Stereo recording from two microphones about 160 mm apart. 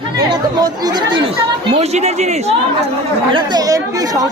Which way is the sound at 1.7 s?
45° right (ahead or behind).